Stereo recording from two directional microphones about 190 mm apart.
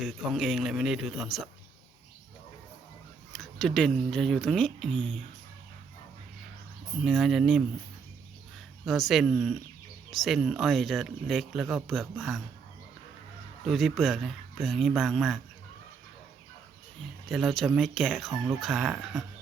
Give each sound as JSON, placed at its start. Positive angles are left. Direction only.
{"t": 0.0, "sound": "speech", "side_deg": 0}
{"t": 3.3, "sound": "a sound", "side_deg": 5}
{"t": 3.8, "sound": "speech", "side_deg": 0}
{"t": 7.0, "sound": "speech", "side_deg": 0}
{"t": 8.8, "sound": "speech", "side_deg": 0}
{"t": 13.7, "sound": "speech", "side_deg": 0}
{"t": 17.2, "sound": "speech", "side_deg": 0}